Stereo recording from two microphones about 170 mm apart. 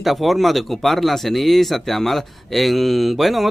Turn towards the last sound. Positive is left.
turn(degrees=0)  # may be behind; listen again after turning